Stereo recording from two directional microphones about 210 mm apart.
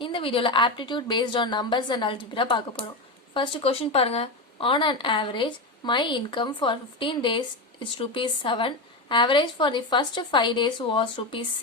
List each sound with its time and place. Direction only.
0.0 s speech: 25° left (ahead or behind)